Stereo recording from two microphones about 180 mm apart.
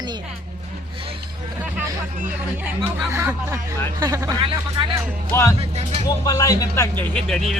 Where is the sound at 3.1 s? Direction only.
15° right (ahead or behind).